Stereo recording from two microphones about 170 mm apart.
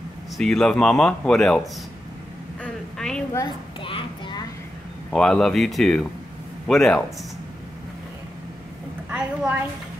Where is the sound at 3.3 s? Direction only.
25° left (ahead or behind).